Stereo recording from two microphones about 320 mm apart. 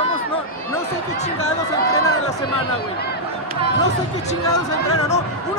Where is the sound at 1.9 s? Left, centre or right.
Left.